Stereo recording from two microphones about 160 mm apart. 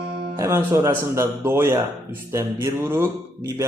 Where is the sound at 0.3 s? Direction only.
20° right (ahead or behind).